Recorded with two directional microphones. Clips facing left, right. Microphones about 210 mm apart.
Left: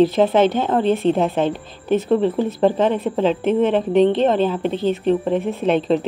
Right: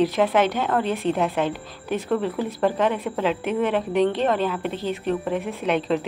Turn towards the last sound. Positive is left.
turn(degrees=30)  # may be behind; listen again after turning